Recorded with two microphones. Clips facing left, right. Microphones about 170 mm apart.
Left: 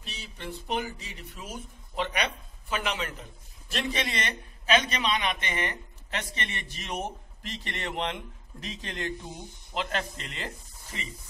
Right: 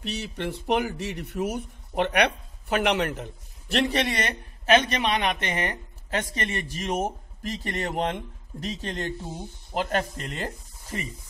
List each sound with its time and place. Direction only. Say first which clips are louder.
0.0 s speech: right 10 dB; 70° right (ahead or behind); by 11.1 s 45° right (ahead or behind)